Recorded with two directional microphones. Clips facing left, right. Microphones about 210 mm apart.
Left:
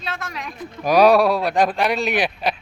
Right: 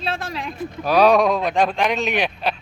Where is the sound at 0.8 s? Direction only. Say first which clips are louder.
Left 1 dB; 10° left (ahead or behind).